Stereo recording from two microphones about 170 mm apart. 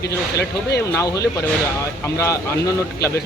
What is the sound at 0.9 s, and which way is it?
Speech, 20° left (ahead or behind).